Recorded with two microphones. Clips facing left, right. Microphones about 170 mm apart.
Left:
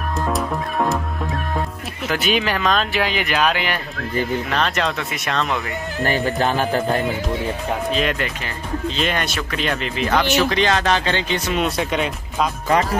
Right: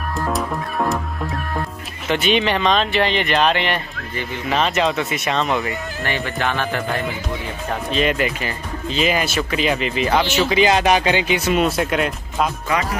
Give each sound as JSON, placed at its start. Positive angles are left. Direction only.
{"t": 0.3, "sound": "speech", "side_deg": 0}
{"t": 6.0, "sound": "speech", "side_deg": 40}
{"t": 7.9, "sound": "speech", "side_deg": 0}